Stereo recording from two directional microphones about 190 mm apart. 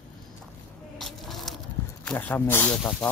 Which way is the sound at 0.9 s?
Centre (ahead or behind).